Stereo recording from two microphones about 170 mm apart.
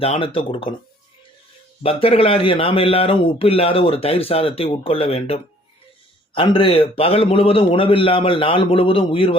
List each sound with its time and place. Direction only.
0.0 s speech: 35° left (ahead or behind)
1.8 s speech: 35° left (ahead or behind)